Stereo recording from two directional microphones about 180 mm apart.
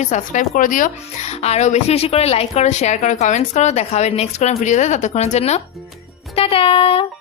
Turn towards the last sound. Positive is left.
turn(degrees=30)  # may be behind; listen again after turning